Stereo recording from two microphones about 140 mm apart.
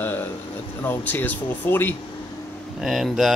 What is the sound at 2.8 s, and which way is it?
Speech, centre (ahead or behind).